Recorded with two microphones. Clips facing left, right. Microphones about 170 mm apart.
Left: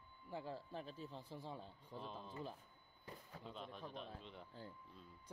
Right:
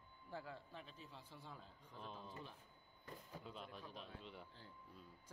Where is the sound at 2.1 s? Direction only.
Centre (ahead or behind).